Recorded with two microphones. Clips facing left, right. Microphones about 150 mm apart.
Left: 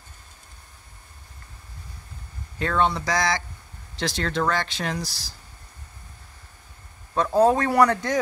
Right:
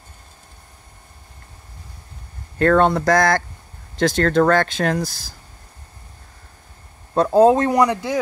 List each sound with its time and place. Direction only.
2.6 s speech: 50° right (ahead or behind)
7.2 s speech: 25° right (ahead or behind); by 8.2 s 10° right (ahead or behind)